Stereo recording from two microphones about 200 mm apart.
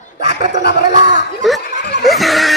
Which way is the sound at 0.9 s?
40° right (ahead or behind).